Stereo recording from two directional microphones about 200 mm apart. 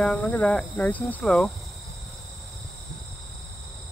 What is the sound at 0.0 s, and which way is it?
Speech, 5° left (ahead or behind).